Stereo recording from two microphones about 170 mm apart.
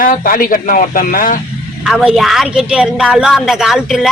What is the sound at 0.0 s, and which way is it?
Speech, 55° left (ahead or behind).